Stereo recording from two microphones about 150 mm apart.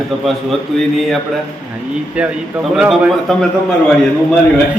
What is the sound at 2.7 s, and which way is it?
Speech, 5° right (ahead or behind).